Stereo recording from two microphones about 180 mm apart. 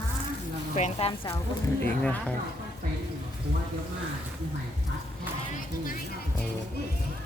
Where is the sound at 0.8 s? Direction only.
35° left (ahead or behind).